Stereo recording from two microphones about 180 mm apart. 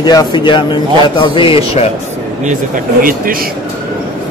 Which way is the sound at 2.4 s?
50° right (ahead or behind).